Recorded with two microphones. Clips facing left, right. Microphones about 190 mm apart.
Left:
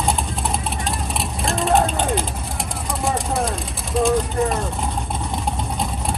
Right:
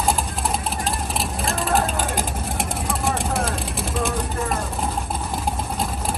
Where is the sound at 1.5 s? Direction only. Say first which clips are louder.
Left 4 dB; centre (ahead or behind).